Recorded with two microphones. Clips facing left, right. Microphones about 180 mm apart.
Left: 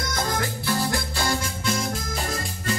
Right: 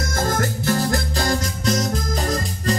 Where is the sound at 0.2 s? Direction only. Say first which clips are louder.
Right 6 dB; 45° right (ahead or behind).